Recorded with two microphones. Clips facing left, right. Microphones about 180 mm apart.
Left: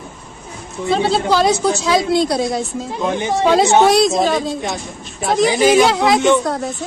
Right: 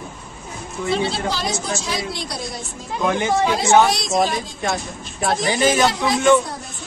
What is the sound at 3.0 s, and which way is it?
Speech, 20° left (ahead or behind).